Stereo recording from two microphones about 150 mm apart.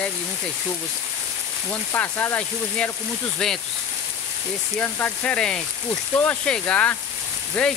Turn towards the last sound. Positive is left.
turn(degrees=5)  # may be behind; listen again after turning